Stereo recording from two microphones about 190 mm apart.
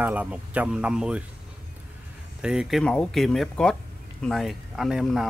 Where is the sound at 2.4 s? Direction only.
Centre (ahead or behind).